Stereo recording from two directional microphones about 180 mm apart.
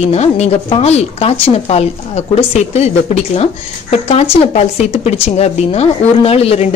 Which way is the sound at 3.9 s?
35° left (ahead or behind).